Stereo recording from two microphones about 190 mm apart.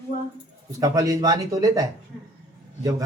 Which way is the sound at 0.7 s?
20° right (ahead or behind).